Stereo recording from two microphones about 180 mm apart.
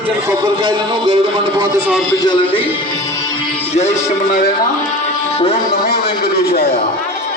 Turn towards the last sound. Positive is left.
turn(degrees=60)  # may be behind; listen again after turning